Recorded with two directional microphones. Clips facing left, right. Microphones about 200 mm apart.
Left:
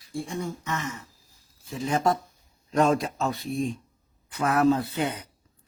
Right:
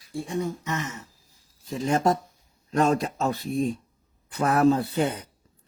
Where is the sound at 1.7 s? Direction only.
40° right (ahead or behind).